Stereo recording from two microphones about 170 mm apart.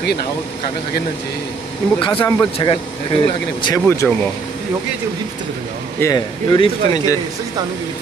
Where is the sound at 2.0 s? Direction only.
30° left (ahead or behind).